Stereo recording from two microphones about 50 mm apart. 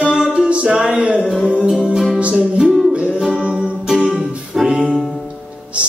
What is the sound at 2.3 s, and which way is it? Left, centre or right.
Music, centre.